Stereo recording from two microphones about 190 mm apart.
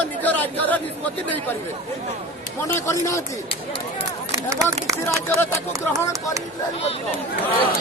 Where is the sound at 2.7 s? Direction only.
15° left (ahead or behind).